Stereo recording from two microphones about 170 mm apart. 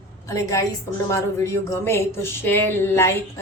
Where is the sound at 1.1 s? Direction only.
15° left (ahead or behind).